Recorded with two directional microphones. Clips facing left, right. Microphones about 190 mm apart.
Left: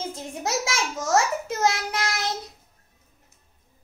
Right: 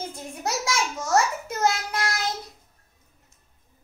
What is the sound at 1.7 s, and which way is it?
Child singing, 20° left (ahead or behind).